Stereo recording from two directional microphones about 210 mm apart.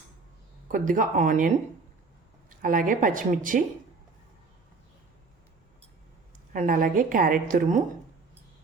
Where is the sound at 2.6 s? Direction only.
40° right (ahead or behind).